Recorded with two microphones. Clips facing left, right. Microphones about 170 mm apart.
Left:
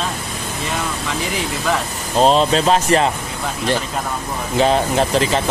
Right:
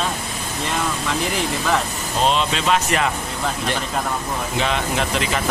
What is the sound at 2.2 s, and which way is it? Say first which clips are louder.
Speech: left 6 dB; 40° left (ahead or behind).